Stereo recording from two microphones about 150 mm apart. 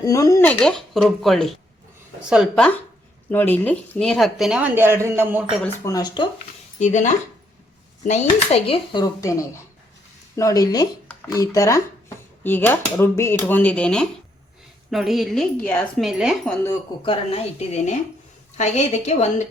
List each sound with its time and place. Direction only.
0.0 s speech: 20° left (ahead or behind)
0.4 s speech: 5° left (ahead or behind)
3.3 s speech: 15° left (ahead or behind); by 5.6 s 5° right (ahead or behind)
5.6 s speech: 20° left (ahead or behind)
6.7 s a woman's voice: 55° left (ahead or behind); by 9.0 s 35° left (ahead or behind)
9.2 s speech: 20° left (ahead or behind); by 15.4 s centre (ahead or behind)
15.6 s speech: 10° left (ahead or behind)
16.0 s speech: 5° right (ahead or behind)
17.1 s a woman's voice: 40° left (ahead or behind)